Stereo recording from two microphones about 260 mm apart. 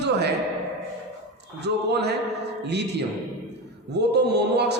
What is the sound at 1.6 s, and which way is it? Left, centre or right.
A man's voice, right.